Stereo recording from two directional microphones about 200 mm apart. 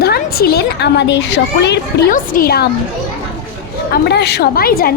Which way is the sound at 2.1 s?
45° left (ahead or behind).